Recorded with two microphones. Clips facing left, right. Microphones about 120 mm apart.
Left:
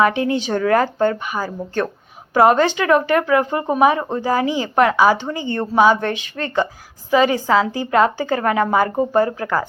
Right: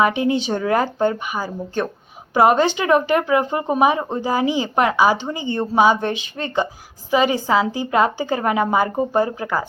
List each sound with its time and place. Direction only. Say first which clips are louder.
0.0 s speech: left 1 dB; 20° right (ahead or behind)